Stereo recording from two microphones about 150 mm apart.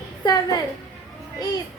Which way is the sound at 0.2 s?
30° left (ahead or behind).